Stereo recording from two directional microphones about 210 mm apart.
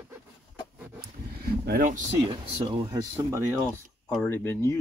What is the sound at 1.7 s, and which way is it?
Speech, 40° right (ahead or behind).